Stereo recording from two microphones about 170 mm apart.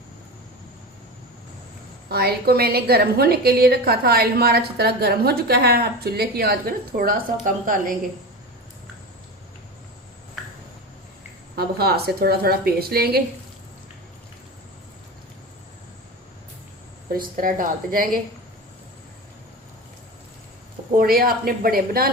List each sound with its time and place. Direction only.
2.0 s a woman's voice: 65° right (ahead or behind)
11.5 s a woman's voice: 65° right (ahead or behind)
17.1 s a woman's voice: 55° right (ahead or behind)
20.9 s a woman's voice: 60° right (ahead or behind)